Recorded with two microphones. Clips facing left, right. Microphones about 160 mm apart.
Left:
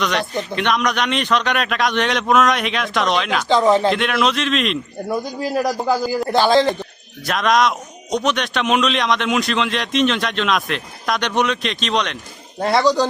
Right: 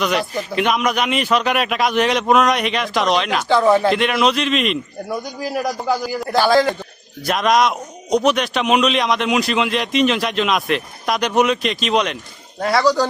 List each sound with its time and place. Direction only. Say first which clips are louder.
0.0 s speech: right 1 dB; 5° right (ahead or behind)
3.5 s speech: even; 20° left (ahead or behind)
3.8 s speech: right 1 dB; centre (ahead or behind)
5.7 s speech: left 2 dB; 25° left (ahead or behind)
7.2 s speech: right 1 dB; centre (ahead or behind)
12.5 s speech: left 1 dB; 25° left (ahead or behind)